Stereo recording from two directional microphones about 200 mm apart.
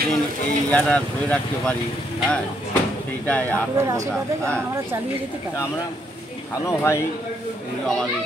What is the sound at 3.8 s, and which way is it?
Speech, 15° right (ahead or behind).